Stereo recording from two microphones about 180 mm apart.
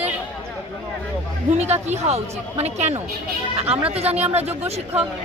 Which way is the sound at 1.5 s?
35° right (ahead or behind).